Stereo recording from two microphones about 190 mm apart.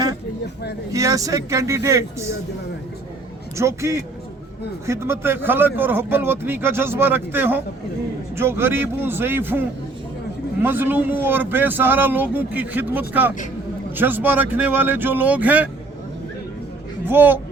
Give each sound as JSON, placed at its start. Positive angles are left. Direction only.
{"t": 0.9, "sound": "a man's voice", "side_deg": -15}
{"t": 3.6, "sound": "a man's voice", "side_deg": -15}
{"t": 17.1, "sound": "a man's voice", "side_deg": -10}